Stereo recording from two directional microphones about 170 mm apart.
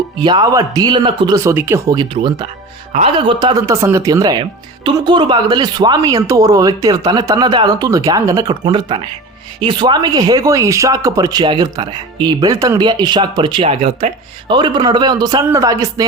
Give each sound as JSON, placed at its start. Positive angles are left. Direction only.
{"t": 0.3, "sound": "speech", "side_deg": -25}
{"t": 1.4, "sound": "speech", "side_deg": -15}